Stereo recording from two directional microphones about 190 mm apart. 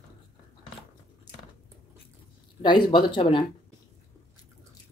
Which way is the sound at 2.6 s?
25° left (ahead or behind).